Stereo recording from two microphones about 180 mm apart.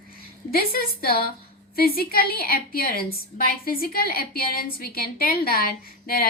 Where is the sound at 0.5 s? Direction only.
55° left (ahead or behind).